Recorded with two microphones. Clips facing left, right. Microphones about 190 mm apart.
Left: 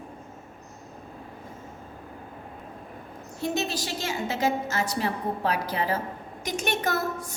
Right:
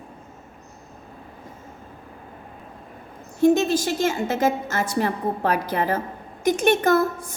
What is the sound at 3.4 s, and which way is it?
A woman's voice, 50° right (ahead or behind).